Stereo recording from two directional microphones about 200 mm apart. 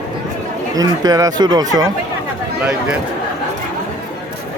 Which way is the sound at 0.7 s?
20° right (ahead or behind).